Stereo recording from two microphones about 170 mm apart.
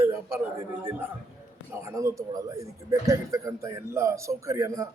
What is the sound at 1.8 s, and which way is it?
A man's voice, 20° right (ahead or behind).